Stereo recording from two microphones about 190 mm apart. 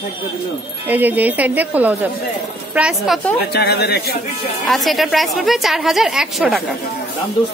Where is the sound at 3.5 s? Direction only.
55° left (ahead or behind).